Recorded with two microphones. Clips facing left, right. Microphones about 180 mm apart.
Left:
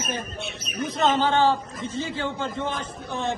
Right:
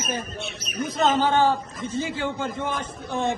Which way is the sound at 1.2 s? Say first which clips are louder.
Even; 10° right (ahead or behind).